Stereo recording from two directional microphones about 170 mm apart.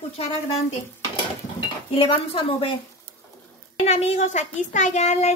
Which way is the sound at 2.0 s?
35° left (ahead or behind).